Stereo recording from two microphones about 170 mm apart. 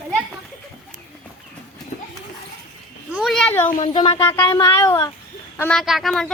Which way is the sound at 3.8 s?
30° left (ahead or behind).